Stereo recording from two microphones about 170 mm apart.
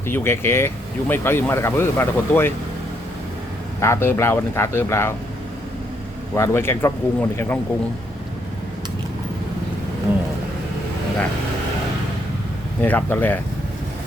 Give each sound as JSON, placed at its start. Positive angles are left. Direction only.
{"t": 0.1, "sound": "speech", "side_deg": 15}
{"t": 3.8, "sound": "speech", "side_deg": 15}
{"t": 6.3, "sound": "speech", "side_deg": 15}
{"t": 12.8, "sound": "speech", "side_deg": 10}